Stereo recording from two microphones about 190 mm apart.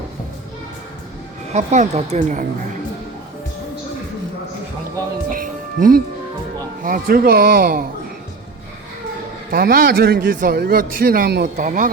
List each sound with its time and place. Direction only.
1.5 s a woman's voice: 35° right (ahead or behind)
5.3 s music: 45° right (ahead or behind)
6.8 s a man's voice: 50° right (ahead or behind)
9.5 s a man's voice: 50° right (ahead or behind)